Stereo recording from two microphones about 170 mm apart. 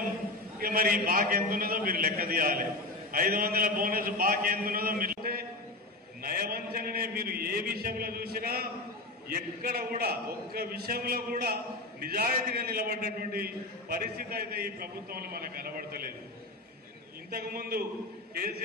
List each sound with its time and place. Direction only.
0.6 s a man's voice: 60° right (ahead or behind)
17.3 s a man's voice: 60° right (ahead or behind)